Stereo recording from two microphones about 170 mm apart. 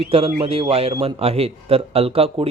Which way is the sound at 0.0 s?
35° right (ahead or behind).